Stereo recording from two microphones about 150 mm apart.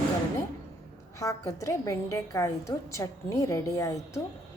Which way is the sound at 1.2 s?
20° left (ahead or behind).